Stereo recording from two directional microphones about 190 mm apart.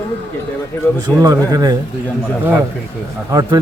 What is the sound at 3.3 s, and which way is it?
Speech, 20° right (ahead or behind).